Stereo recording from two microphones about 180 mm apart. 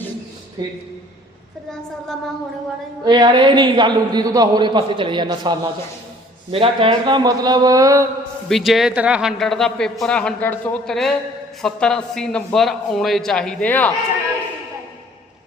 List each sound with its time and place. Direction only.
0.6 s a man's voice: 20° right (ahead or behind)
1.7 s a man's voice: centre (ahead or behind)
3.0 s a man's voice: 25° right (ahead or behind)
8.4 s a man's voice: centre (ahead or behind)